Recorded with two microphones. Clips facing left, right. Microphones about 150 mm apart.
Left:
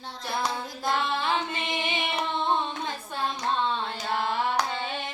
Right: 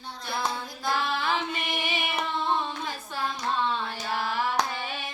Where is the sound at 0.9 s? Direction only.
25° left (ahead or behind).